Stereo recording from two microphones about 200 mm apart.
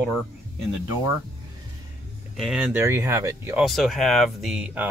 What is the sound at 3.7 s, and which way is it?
Speech, centre (ahead or behind).